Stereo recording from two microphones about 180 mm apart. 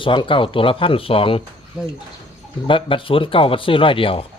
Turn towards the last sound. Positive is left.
turn(degrees=30)  # may be behind; listen again after turning